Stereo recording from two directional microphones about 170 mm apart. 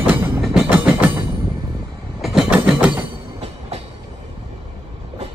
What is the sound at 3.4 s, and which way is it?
Train, 35° right (ahead or behind).